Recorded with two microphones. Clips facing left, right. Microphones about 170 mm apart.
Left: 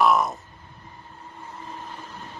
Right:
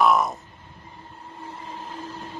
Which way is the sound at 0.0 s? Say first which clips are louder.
Even; centre (ahead or behind).